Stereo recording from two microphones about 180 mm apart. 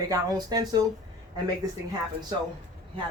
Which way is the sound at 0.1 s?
20° right (ahead or behind).